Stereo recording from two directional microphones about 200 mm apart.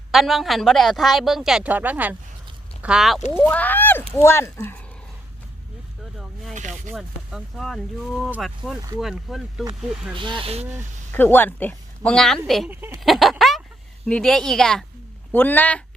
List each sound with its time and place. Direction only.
0.1 s a woman's voice: centre (ahead or behind)
3.3 s speech: 10° left (ahead or behind)
6.5 s a sound: 40° right (ahead or behind)
6.9 s a woman's voice: centre (ahead or behind)
10.2 s speech: 25° right (ahead or behind)
11.1 s a woman's voice: 10° left (ahead or behind)
12.7 s speech: 10° right (ahead or behind)
13.1 s a sound: centre (ahead or behind)
14.1 s a woman's voice: 5° left (ahead or behind)